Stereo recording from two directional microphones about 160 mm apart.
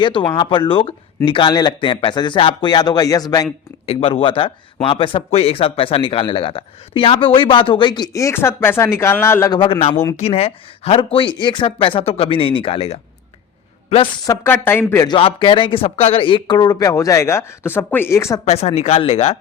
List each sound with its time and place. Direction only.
0.0 s speech: 30° left (ahead or behind)
3.8 s speech: 35° left (ahead or behind); by 9.5 s 15° left (ahead or behind)
9.5 s speech: 35° left (ahead or behind)
9.9 s speech: 20° left (ahead or behind)
10.2 s speech: 40° left (ahead or behind)
14.3 s speech: 15° left (ahead or behind)
18.4 s speech: 40° left (ahead or behind)